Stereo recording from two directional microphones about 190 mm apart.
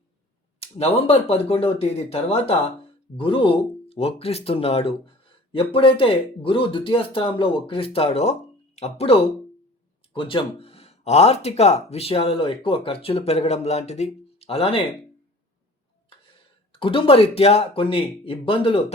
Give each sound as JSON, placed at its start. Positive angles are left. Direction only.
{"t": 0.6, "sound": "speech", "side_deg": 30}
{"t": 16.7, "sound": "speech", "side_deg": 25}